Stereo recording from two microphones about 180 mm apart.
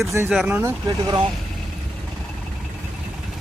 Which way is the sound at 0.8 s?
20° right (ahead or behind).